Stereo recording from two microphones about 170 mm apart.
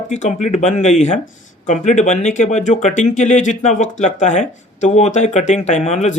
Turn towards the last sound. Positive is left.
turn(degrees=40)  # may be behind; listen again after turning